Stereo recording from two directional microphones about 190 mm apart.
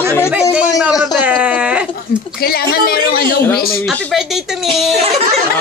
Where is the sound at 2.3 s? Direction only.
55° left (ahead or behind).